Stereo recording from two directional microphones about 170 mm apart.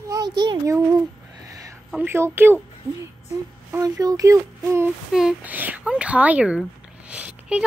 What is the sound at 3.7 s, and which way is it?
Speech, 20° right (ahead or behind).